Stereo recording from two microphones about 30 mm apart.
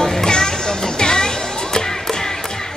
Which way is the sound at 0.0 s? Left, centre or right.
Left.